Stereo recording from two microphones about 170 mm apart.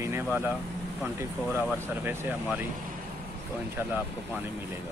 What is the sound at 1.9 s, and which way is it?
Speech, 10° right (ahead or behind).